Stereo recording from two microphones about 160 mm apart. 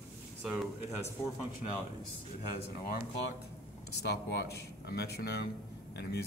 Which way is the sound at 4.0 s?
90° left.